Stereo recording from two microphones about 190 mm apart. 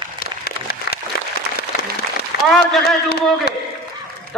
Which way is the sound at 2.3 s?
60° left (ahead or behind).